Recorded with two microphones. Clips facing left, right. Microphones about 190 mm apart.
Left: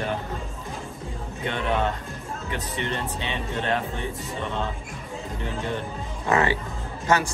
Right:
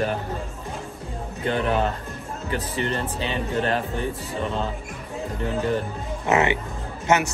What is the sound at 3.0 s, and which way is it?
Speech, centre (ahead or behind).